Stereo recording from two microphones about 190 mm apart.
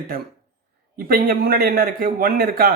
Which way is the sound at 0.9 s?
50° right (ahead or behind).